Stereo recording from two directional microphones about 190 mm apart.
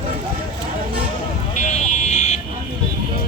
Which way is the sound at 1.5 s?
40° left (ahead or behind).